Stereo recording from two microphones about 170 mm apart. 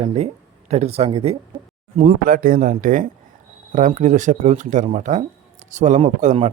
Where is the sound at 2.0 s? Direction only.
55° right (ahead or behind).